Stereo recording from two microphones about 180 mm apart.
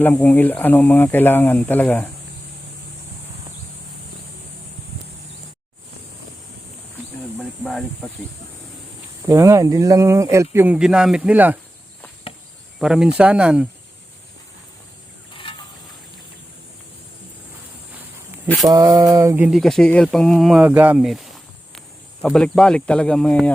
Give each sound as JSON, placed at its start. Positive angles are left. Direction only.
{"t": 0.0, "sound": "speech", "side_deg": 10}
{"t": 7.6, "sound": "a sound", "side_deg": 0}
{"t": 9.2, "sound": "speech", "side_deg": -15}
{"t": 12.8, "sound": "speech", "side_deg": -5}
{"t": 18.6, "sound": "a sound", "side_deg": -20}
{"t": 19.5, "sound": "speech", "side_deg": 0}